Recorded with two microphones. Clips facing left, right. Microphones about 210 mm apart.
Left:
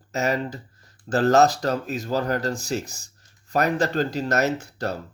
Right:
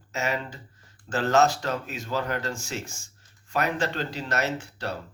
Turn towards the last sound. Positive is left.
turn(degrees=45)  # may be behind; listen again after turning